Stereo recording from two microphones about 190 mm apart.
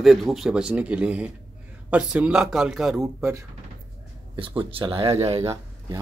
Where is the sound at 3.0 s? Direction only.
15° right (ahead or behind).